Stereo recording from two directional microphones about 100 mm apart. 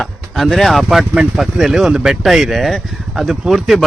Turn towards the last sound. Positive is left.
turn(degrees=0)  # may be behind; listen again after turning